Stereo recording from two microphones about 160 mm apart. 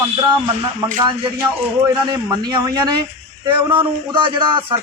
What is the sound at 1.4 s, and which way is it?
Speech, 15° right (ahead or behind).